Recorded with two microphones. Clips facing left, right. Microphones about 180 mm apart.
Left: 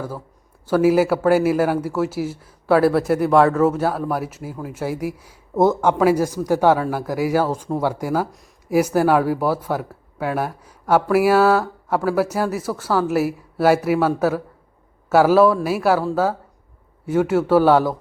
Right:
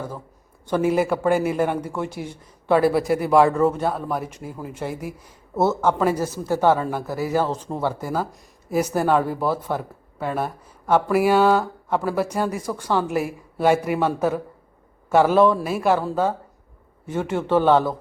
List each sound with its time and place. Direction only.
0.6 s a man's voice: 5° left (ahead or behind)